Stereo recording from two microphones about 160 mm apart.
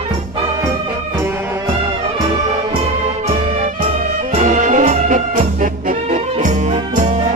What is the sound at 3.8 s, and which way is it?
Music, 45° right (ahead or behind).